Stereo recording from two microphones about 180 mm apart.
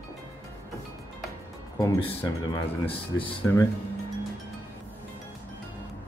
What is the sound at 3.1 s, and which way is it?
Speech, 20° left (ahead or behind).